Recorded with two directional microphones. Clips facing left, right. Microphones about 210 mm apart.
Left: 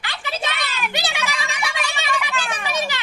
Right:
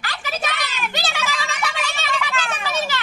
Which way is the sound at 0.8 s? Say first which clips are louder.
Left 1 dB; 15° left (ahead or behind).